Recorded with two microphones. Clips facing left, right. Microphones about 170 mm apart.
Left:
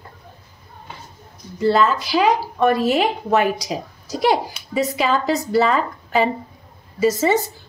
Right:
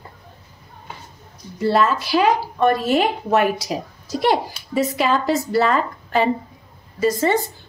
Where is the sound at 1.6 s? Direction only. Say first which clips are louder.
Left 1 dB; 5° right (ahead or behind).